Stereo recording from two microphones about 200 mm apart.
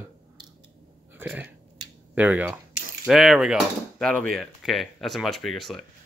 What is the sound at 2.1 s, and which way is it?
Speech, 10° right (ahead or behind).